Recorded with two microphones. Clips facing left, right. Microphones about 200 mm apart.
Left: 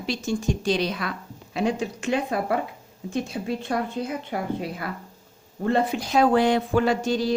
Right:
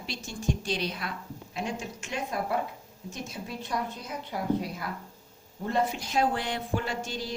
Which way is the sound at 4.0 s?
75° left (ahead or behind).